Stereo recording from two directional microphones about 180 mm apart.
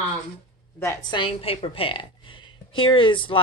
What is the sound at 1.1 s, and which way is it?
A woman's voice, 30° left (ahead or behind).